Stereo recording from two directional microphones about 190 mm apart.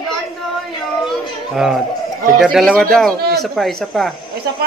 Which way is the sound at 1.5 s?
Centre (ahead or behind).